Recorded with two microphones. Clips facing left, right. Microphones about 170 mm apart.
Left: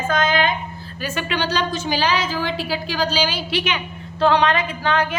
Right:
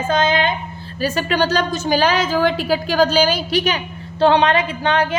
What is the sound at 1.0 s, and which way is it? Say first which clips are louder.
A woman's voice: right 6 dB; 35° right (ahead or behind).